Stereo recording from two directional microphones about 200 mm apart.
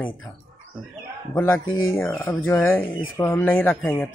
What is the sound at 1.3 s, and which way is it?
Speech, 10° left (ahead or behind).